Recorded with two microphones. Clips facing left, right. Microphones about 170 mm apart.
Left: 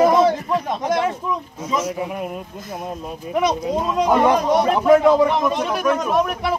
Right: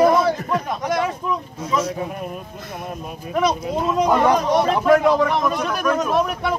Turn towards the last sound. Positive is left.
turn(degrees=0)  # may be behind; listen again after turning